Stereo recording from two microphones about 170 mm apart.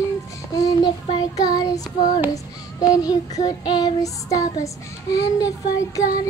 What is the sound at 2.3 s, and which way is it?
Speech, 20° left (ahead or behind).